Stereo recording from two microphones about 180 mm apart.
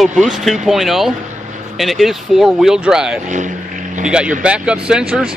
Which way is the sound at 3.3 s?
45° right (ahead or behind).